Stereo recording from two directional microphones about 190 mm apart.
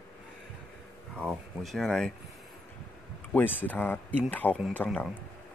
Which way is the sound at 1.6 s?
Centre (ahead or behind).